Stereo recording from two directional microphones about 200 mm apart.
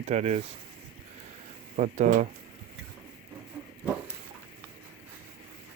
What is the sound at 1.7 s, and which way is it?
Speech, 40° right (ahead or behind).